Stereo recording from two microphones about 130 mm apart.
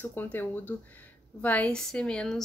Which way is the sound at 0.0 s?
15° left (ahead or behind).